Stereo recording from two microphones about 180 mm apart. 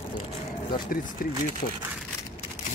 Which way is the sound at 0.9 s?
50° left (ahead or behind).